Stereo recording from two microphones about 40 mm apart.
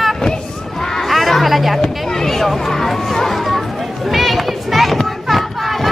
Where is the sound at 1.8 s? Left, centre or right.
Centre.